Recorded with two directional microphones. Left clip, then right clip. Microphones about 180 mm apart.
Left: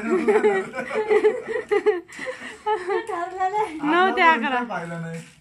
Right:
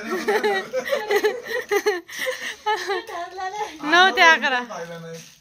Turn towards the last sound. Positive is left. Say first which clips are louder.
# right 2 dB
turn(degrees=-10)  # may be behind; listen again after turning